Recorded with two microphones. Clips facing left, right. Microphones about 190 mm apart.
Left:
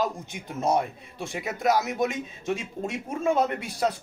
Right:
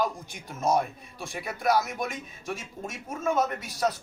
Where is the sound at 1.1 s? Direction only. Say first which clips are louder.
Left 4 dB; 20° left (ahead or behind).